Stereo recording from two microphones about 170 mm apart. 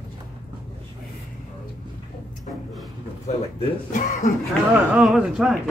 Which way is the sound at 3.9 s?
50° left (ahead or behind).